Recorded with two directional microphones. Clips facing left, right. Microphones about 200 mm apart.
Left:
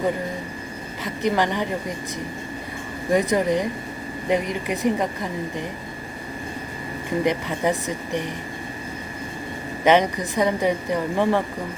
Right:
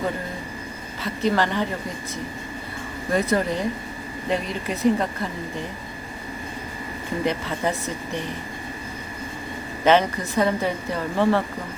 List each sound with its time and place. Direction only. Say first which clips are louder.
1.0 s a woman's voice: even; 15° left (ahead or behind)
3.1 s a woman's voice: left 3 dB; 15° left (ahead or behind)
7.3 s a woman's voice: left 2 dB; 15° left (ahead or behind)
9.8 s a woman's voice: left 1 dB; 15° left (ahead or behind)